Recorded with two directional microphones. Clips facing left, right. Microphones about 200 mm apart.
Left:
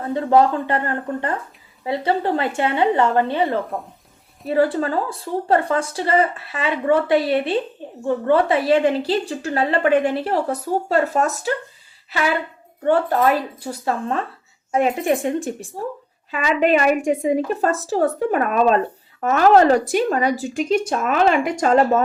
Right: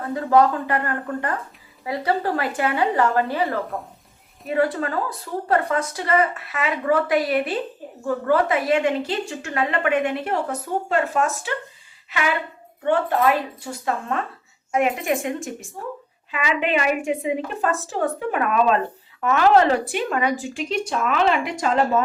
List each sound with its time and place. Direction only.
0.0 s a woman's voice: 30° left (ahead or behind)
12.8 s a woman's voice: 40° left (ahead or behind)